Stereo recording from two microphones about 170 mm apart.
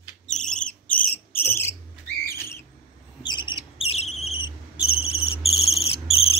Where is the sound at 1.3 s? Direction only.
10° left (ahead or behind).